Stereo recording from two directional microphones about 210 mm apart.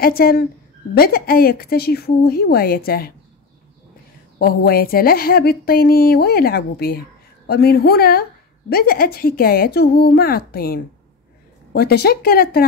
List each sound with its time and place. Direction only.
0.0 s a woman's voice: 45° left (ahead or behind)
4.4 s a woman's voice: 45° left (ahead or behind)